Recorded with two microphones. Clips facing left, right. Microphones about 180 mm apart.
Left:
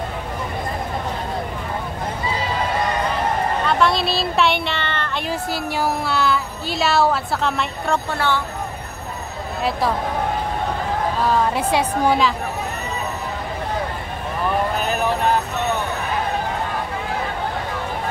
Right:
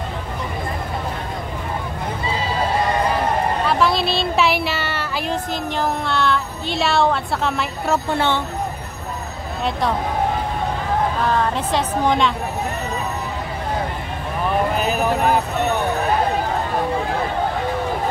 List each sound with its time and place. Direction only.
3.6 s speech: centre (ahead or behind)
5.3 s music: 5° left (ahead or behind)
8.1 s speech: 25° right (ahead or behind)
9.7 s music: 5° left (ahead or behind)
11.2 s a woman's voice: 10° left (ahead or behind)
14.8 s a sound: 5° right (ahead or behind)